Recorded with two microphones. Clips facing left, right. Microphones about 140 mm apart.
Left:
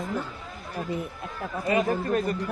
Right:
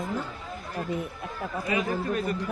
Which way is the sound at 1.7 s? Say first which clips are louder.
Left 4 dB; 35° left (ahead or behind).